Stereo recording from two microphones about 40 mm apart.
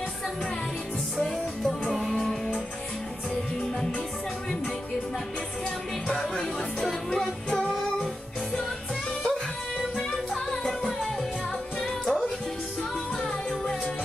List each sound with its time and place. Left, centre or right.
1.2 s music: centre
6.4 s music: centre
9.8 s music: centre